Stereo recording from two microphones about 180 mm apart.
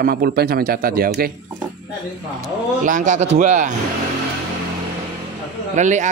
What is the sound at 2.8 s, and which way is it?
Speech, 45° right (ahead or behind).